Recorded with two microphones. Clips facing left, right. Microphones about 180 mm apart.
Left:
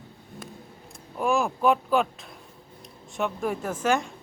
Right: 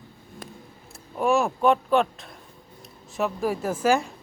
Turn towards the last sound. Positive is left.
turn(degrees=-5)  # may be behind; listen again after turning